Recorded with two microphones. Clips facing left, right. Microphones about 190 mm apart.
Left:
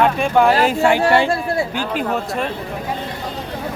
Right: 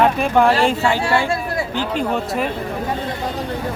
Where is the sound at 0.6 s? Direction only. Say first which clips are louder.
Left 3 dB; 10° left (ahead or behind).